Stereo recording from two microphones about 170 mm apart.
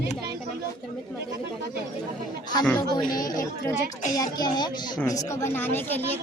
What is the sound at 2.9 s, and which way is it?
A woman's voice, 25° left (ahead or behind).